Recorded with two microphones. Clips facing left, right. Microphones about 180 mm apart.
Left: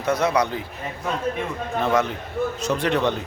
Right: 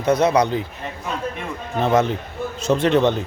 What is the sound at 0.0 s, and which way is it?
Speech, 20° right (ahead or behind).